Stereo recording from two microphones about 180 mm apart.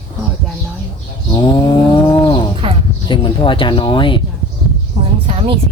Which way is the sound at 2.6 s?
30° right (ahead or behind).